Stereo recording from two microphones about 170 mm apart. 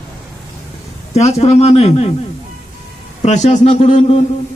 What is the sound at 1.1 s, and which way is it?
Speech, 35° left (ahead or behind).